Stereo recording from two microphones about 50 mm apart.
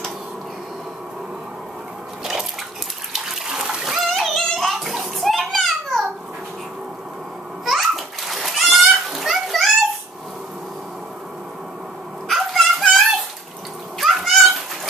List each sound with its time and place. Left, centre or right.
3.1 s bathtub: centre
3.6 s splash: centre
4.1 s bathtub: centre
7.6 s a sound: centre
9.1 s splash: centre
12.3 s dog: centre
13.9 s cat: centre